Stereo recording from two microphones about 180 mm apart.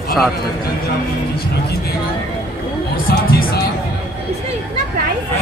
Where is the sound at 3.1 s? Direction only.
55° left (ahead or behind).